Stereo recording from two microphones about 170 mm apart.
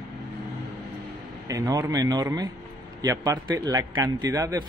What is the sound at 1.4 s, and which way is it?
Speech, 20° right (ahead or behind).